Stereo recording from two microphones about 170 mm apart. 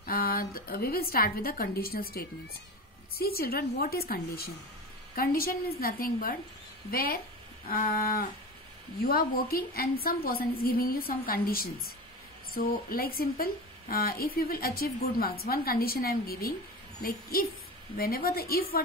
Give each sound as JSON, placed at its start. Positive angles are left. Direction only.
{"t": 0.0, "sound": "a woman's voice", "side_deg": 60}